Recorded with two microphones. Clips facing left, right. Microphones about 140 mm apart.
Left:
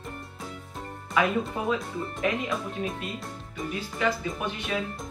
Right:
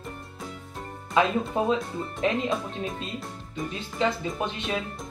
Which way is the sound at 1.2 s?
25° right (ahead or behind).